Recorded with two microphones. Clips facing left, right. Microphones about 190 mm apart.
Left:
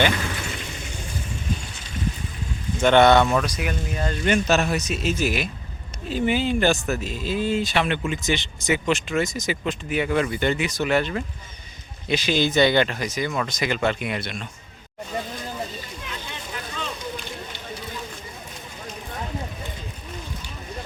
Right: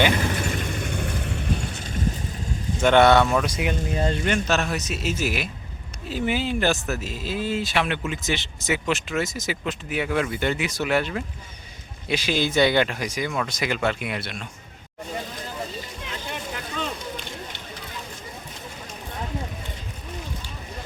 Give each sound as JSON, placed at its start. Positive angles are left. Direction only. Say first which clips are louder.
{"t": 0.4, "sound": "vehicle", "louder": "right 6 dB", "side_deg": -50}
{"t": 2.8, "sound": "speech", "louder": "left 1 dB", "side_deg": -5}
{"t": 3.4, "sound": "speech", "louder": "right 2 dB", "side_deg": -25}
{"t": 4.3, "sound": "speech", "louder": "left 3 dB", "side_deg": 10}
{"t": 4.8, "sound": "speech", "louder": "left 2 dB", "side_deg": -5}